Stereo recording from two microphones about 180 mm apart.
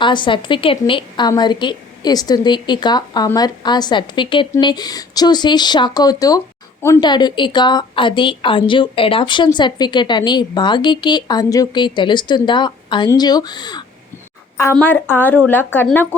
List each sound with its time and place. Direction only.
0.0 s a woman's voice: 25° left (ahead or behind)
14.6 s a woman's voice: 10° left (ahead or behind)